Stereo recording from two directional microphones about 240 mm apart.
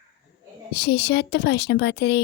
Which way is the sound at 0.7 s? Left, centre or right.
Left.